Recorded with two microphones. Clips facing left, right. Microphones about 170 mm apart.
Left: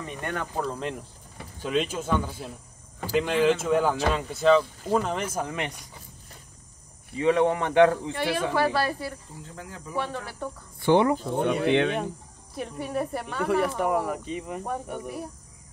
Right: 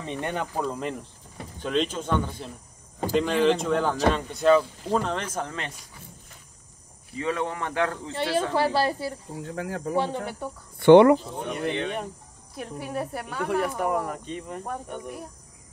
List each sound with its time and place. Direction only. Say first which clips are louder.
0.0 s speech: right 2 dB; 25° right (ahead or behind)
0.7 s speech: right 1 dB; 5° right (ahead or behind)
1.6 s speech: right 1 dB; 5° left (ahead or behind)
7.2 s speech: left 6 dB; 20° left (ahead or behind)
8.1 s speech: right 1 dB; 25° right (ahead or behind)
9.3 s speech: right 9 dB; 65° right (ahead or behind)
9.9 s speech: right 2 dB; 20° right (ahead or behind)
10.8 s speech: right 7 dB; 75° right (ahead or behind)
11.2 s speech: left 6 dB; 65° left (ahead or behind)
12.5 s speech: left 2 dB; centre (ahead or behind)